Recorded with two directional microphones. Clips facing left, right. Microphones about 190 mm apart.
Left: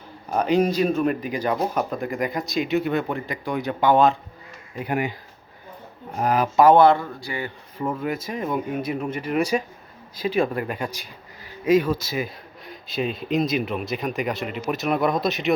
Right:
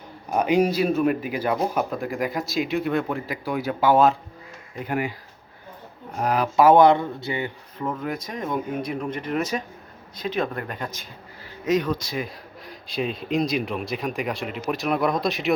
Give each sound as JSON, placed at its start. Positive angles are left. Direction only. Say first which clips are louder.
{"t": 0.3, "sound": "speech", "louder": "even", "side_deg": -10}
{"t": 4.9, "sound": "speech", "louder": "left 1 dB", "side_deg": 20}
{"t": 6.1, "sound": "speech", "louder": "left 1 dB", "side_deg": 0}
{"t": 7.8, "sound": "speech", "louder": "left 2 dB", "side_deg": 5}